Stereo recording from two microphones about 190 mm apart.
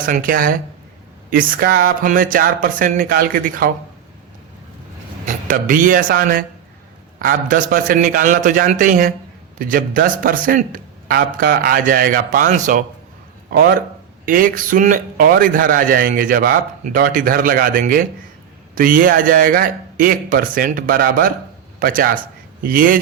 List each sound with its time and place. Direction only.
0.0 s speech: 45° right (ahead or behind)
5.2 s speech: 45° right (ahead or behind)
13.5 s a man's voice: 50° right (ahead or behind)